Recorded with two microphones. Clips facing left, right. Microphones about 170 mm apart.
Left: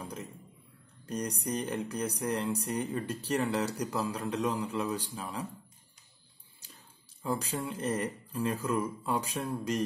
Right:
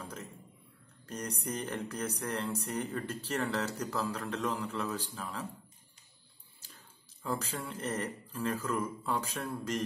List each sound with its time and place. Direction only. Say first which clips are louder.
1.0 s speech: left 4 dB; 15° left (ahead or behind)
7.2 s speech: left 3 dB; 15° left (ahead or behind)